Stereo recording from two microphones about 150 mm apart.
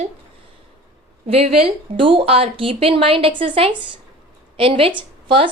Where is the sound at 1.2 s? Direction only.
40° right (ahead or behind).